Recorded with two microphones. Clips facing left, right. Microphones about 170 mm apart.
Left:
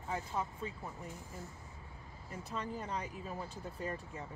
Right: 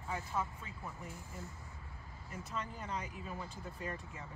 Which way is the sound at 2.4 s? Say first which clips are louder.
Left 3 dB; 35° left (ahead or behind).